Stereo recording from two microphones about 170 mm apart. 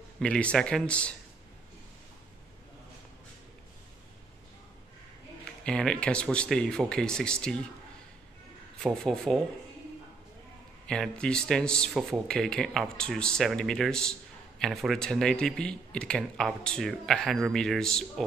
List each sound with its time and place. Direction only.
0.2 s speech: 5° left (ahead or behind)
5.6 s speech: 5° left (ahead or behind)
8.8 s speech: 5° left (ahead or behind)
10.9 s speech: 5° left (ahead or behind)